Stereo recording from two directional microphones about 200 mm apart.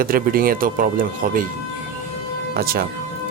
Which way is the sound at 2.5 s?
50° right (ahead or behind).